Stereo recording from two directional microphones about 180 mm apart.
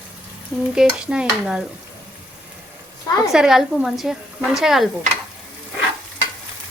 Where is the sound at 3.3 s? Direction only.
Centre (ahead or behind).